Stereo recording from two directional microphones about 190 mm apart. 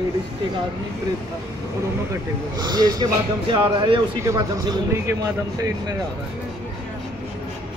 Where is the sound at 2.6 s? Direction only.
20° right (ahead or behind).